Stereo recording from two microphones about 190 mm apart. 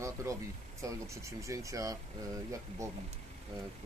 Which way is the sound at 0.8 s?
15° right (ahead or behind).